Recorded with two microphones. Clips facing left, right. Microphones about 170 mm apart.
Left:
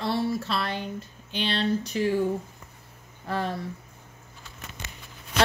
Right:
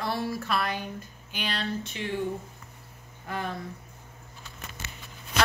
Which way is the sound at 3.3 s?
35° left (ahead or behind).